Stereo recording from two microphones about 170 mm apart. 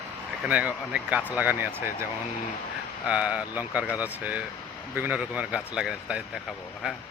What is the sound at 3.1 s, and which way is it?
Speech, 10° right (ahead or behind).